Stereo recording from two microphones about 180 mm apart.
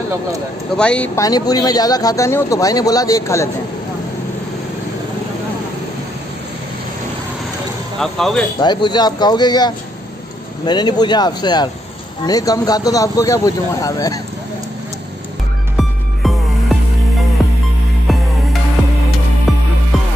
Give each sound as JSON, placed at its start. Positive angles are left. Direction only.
{"t": 0.7, "sound": "speech", "side_deg": 5}
{"t": 1.2, "sound": "speech", "side_deg": 20}
{"t": 8.0, "sound": "speech", "side_deg": 0}
{"t": 8.5, "sound": "speech", "side_deg": 25}
{"t": 15.7, "sound": "music", "side_deg": 0}
{"t": 19.5, "sound": "music", "side_deg": 0}